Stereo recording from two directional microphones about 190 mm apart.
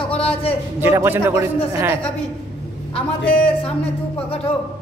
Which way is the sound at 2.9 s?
30° left (ahead or behind).